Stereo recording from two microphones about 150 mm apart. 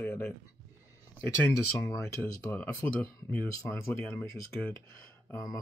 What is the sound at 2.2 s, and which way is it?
Speech, 5° left (ahead or behind).